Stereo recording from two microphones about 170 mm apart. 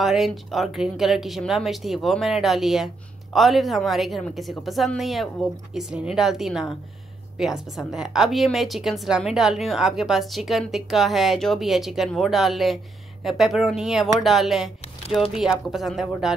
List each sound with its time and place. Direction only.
0.0 s a woman's voice: centre (ahead or behind)